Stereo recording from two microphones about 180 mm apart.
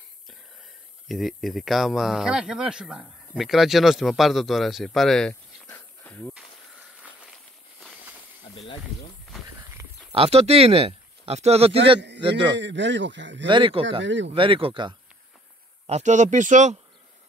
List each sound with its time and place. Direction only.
1.0 s speech: centre (ahead or behind)
6.3 s walk: 5° right (ahead or behind)
9.8 s a sound: 15° right (ahead or behind)
10.1 s speech: 35° right (ahead or behind)
12.5 s speech: 80° right
13.5 s speech: 30° right (ahead or behind)
14.0 s speech: 90° right
14.3 s speech: 30° right (ahead or behind)
15.9 s speech: 40° right (ahead or behind)